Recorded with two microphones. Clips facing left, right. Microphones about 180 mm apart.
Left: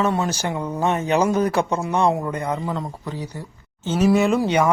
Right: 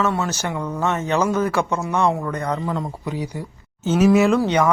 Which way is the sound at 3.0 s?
10° right (ahead or behind).